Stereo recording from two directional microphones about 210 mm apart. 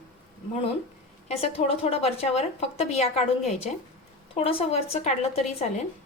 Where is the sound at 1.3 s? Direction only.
30° left (ahead or behind).